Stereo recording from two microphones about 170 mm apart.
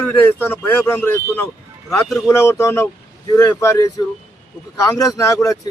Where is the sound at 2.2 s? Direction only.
15° left (ahead or behind).